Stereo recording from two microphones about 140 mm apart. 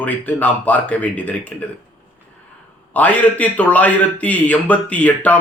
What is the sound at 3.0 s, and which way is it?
A man's voice, 10° left (ahead or behind).